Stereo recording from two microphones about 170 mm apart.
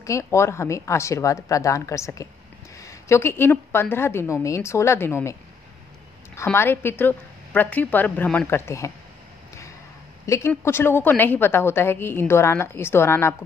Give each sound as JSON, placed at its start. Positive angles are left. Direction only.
{"t": 0.0, "sound": "a woman's voice", "side_deg": 15}
{"t": 10.2, "sound": "a woman's voice", "side_deg": 15}